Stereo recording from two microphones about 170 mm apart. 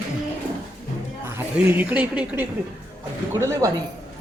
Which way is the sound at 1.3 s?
10° right (ahead or behind).